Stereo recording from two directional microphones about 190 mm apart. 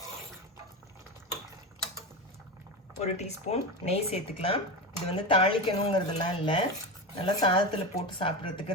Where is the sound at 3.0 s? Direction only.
35° left (ahead or behind).